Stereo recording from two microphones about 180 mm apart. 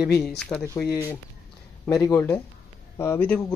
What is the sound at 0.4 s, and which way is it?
Speech, 5° left (ahead or behind).